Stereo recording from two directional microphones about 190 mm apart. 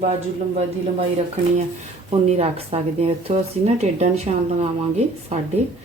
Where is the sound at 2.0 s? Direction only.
30° right (ahead or behind).